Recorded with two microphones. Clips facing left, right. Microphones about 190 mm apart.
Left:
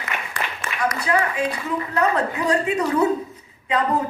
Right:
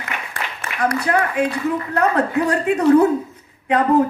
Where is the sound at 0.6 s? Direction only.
55° right (ahead or behind).